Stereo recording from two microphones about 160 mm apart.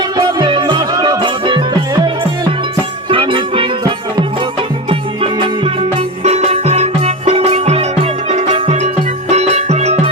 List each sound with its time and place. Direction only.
0.2 s music: 30° right (ahead or behind)
3.1 s music: 35° right (ahead or behind)
4.9 s music: 35° right (ahead or behind)